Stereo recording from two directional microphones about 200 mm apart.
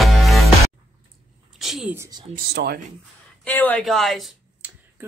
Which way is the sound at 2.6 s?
60° right (ahead or behind).